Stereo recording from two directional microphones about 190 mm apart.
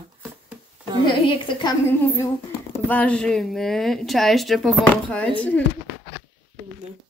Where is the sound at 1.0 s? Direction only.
25° left (ahead or behind).